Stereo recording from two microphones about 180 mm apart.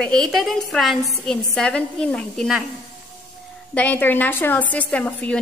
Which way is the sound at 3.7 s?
10° left (ahead or behind).